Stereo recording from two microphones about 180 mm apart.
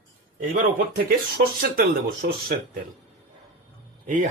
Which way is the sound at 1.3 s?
55° right (ahead or behind).